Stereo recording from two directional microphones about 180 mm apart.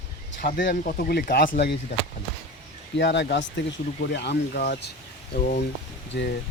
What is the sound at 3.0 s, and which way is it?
Speech, 75° left (ahead or behind).